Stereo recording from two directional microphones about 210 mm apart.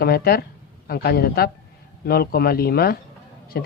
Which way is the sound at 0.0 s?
45° left (ahead or behind).